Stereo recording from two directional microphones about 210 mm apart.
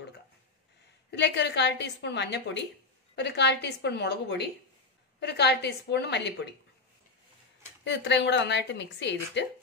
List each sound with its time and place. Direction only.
1.1 s a woman's voice: 55° left (ahead or behind)
7.8 s a woman's voice: 55° left (ahead or behind)